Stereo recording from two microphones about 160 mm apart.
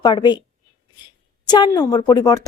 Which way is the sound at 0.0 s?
30° left (ahead or behind).